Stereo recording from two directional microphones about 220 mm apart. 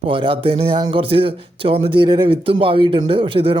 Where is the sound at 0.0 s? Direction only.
25° right (ahead or behind).